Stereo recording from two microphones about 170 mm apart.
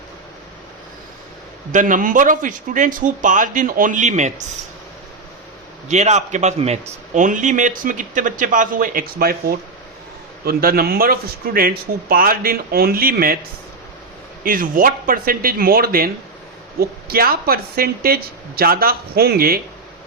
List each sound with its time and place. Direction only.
1.7 s a man's voice: 50° right (ahead or behind)
5.9 s a man's voice: 40° right (ahead or behind); by 13.4 s 60° right (ahead or behind)
14.4 s speech: 55° right (ahead or behind)